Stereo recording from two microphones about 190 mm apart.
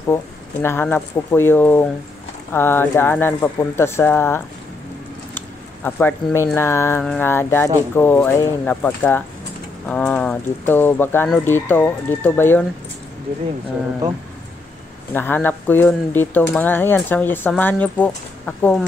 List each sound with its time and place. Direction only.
0.1 s speech: 10° left (ahead or behind)
5.9 s speech: 10° left (ahead or behind)
15.1 s speech: 10° left (ahead or behind)